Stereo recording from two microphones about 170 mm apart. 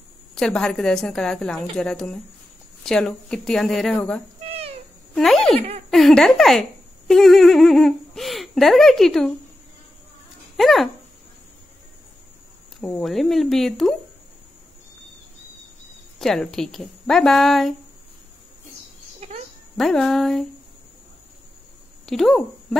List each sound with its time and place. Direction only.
0.3 s speech: 5° left (ahead or behind)
4.5 s cat: 35° right (ahead or behind)
5.1 s speech: centre (ahead or behind)
10.6 s speech: centre (ahead or behind)
12.8 s speech: centre (ahead or behind)
16.2 s speech: centre (ahead or behind)
19.1 s a sound: 40° right (ahead or behind)
19.8 s speech: centre (ahead or behind)
22.0 s speech: centre (ahead or behind)